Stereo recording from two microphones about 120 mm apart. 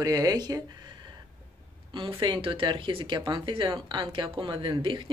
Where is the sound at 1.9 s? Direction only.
45° right (ahead or behind).